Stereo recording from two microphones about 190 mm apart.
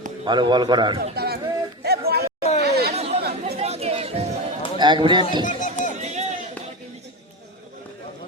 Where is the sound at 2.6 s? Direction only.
55° right (ahead or behind).